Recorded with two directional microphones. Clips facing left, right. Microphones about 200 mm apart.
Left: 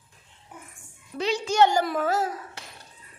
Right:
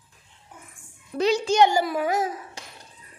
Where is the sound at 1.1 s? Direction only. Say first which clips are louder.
Right 5 dB; 40° right (ahead or behind).